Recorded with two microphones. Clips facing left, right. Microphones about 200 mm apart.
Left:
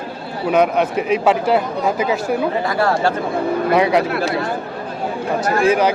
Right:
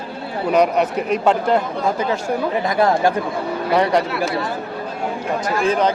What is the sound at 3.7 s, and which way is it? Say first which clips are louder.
Speech: left 1 dB; 5° left (ahead or behind).